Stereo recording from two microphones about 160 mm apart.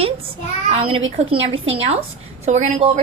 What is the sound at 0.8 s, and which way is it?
A woman's voice, 35° right (ahead or behind).